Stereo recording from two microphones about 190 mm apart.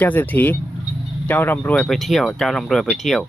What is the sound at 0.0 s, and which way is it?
Speech, 10° left (ahead or behind).